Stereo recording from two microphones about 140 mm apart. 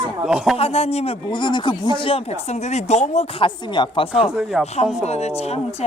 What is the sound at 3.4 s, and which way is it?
Speech, 35° left (ahead or behind).